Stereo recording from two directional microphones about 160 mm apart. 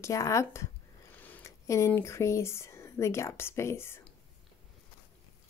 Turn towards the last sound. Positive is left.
turn(degrees=15)  # may be behind; listen again after turning